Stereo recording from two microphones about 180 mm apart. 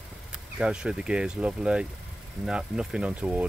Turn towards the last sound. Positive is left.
turn(degrees=-5)  # may be behind; listen again after turning